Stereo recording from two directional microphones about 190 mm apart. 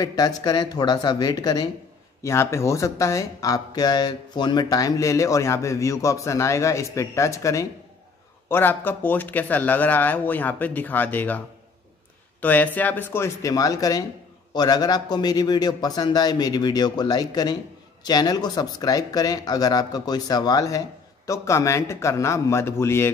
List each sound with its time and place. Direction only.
0.0 s a man's voice: 20° left (ahead or behind)